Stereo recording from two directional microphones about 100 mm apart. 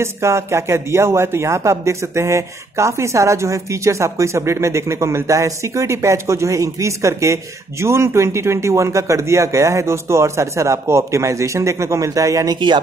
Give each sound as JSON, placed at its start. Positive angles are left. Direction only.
{"t": 0.0, "sound": "a man's voice", "side_deg": -30}
{"t": 12.5, "sound": "speech", "side_deg": -50}